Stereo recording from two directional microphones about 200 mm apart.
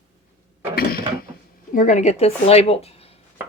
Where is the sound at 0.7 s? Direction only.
50° left (ahead or behind).